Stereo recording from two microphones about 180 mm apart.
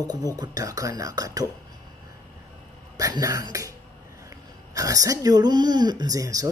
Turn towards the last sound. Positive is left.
turn(degrees=-20)  # may be behind; listen again after turning